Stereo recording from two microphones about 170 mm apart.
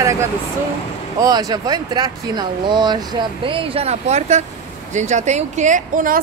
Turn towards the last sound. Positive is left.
turn(degrees=-50)  # may be behind; listen again after turning